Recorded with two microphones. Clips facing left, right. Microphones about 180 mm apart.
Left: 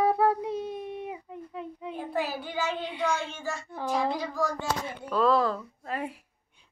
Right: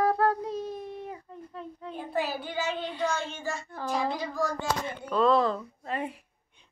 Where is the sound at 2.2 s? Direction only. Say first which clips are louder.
Right 1 dB; 5° left (ahead or behind).